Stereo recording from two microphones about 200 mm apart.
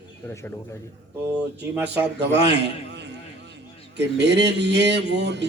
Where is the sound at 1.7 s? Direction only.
10° right (ahead or behind).